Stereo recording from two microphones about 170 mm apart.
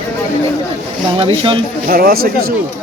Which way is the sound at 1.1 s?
30° right (ahead or behind).